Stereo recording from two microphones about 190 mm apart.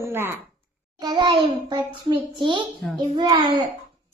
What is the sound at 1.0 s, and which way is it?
A child's voice, 20° right (ahead or behind).